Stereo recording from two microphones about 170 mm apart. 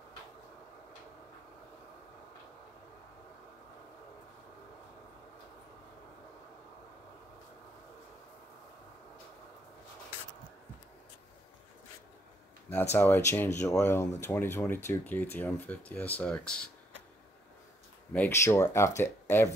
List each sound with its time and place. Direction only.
12.9 s speech: 15° left (ahead or behind)
18.1 s speech: 10° left (ahead or behind)